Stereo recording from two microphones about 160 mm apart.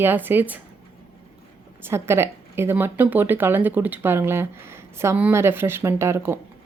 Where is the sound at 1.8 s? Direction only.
15° right (ahead or behind).